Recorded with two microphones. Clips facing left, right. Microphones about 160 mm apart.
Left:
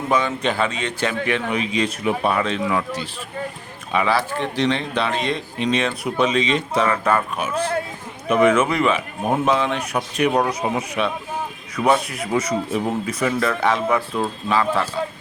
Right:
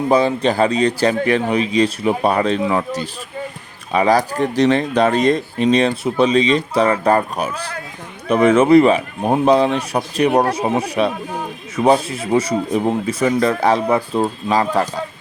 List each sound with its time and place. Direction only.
0.1 s speech: 35° right (ahead or behind)